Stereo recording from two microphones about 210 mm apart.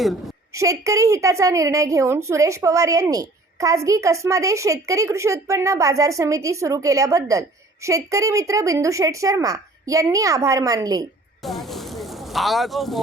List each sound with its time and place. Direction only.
0.0 s a woman's voice: centre (ahead or behind)
0.5 s a woman's voice: 15° right (ahead or behind)
11.4 s a sound: centre (ahead or behind)